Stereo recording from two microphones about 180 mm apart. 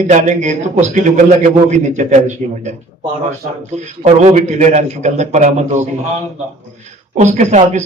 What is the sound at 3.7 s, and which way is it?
A man's voice, 40° right (ahead or behind).